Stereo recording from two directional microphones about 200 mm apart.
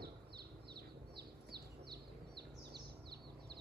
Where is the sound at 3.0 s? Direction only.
55° right (ahead or behind).